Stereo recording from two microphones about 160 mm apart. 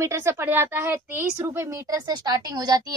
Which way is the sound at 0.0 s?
15° right (ahead or behind).